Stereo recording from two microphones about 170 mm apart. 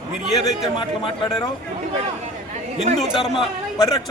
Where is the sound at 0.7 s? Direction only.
30° left (ahead or behind).